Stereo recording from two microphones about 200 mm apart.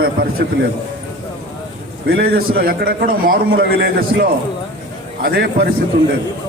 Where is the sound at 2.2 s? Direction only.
50° right (ahead or behind).